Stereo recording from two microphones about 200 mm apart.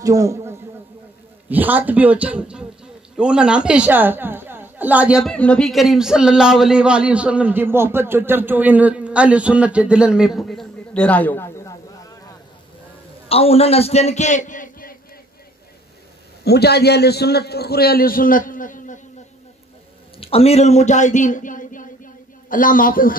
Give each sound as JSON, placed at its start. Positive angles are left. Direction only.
{"t": 0.0, "sound": "a man's voice", "side_deg": -15}
{"t": 13.3, "sound": "a man's voice", "side_deg": 30}
{"t": 16.4, "sound": "a man's voice", "side_deg": 55}
{"t": 20.2, "sound": "speech", "side_deg": 30}